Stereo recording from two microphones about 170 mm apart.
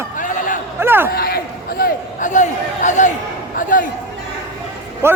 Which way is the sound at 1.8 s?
45° left (ahead or behind).